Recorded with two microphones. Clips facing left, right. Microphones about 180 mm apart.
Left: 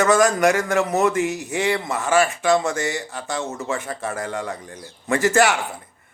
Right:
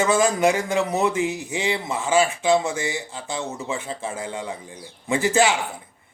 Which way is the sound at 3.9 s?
10° right (ahead or behind).